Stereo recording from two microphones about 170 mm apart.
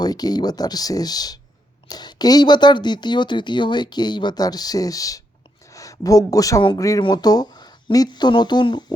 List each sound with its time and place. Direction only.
0.0 s speech: 25° left (ahead or behind)